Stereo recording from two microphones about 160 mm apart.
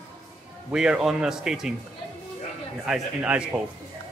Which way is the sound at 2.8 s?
5° right (ahead or behind).